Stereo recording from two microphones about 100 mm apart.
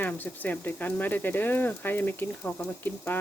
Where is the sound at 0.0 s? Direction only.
20° left (ahead or behind).